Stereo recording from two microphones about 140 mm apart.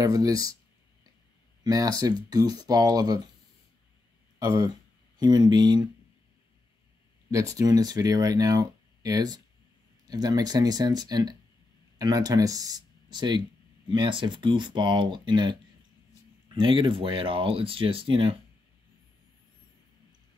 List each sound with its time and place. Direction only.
0.0 s speech: 25° right (ahead or behind)
1.6 s speech: 25° right (ahead or behind)
4.4 s speech: 25° right (ahead or behind)
7.2 s speech: 25° right (ahead or behind)
16.5 s speech: 35° right (ahead or behind)